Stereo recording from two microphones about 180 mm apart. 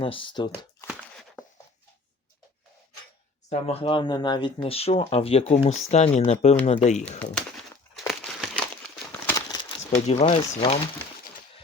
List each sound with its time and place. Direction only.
0.0 s speech: 30° left (ahead or behind)
3.5 s speech: 35° left (ahead or behind)
7.2 s crumpling: 5° left (ahead or behind)
9.2 s crumpling: 20° left (ahead or behind)
10.1 s speech: 35° left (ahead or behind)